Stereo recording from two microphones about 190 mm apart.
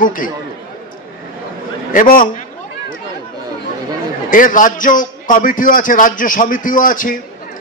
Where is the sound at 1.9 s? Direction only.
45° left (ahead or behind).